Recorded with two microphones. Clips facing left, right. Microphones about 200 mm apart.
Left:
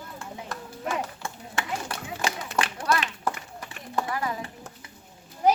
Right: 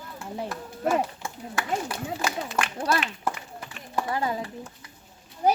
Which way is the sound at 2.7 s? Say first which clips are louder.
Right 1 dB; 25° right (ahead or behind).